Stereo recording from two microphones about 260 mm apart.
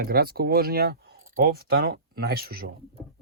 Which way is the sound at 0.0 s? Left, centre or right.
Right.